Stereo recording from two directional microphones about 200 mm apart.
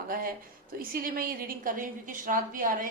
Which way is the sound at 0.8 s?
45° right (ahead or behind).